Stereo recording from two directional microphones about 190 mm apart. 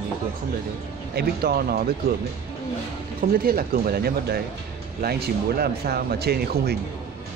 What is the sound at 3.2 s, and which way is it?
Speech, 50° right (ahead or behind).